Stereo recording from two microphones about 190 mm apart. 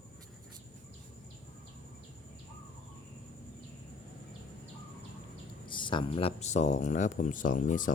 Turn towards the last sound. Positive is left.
turn(degrees=45)  # may be behind; listen again after turning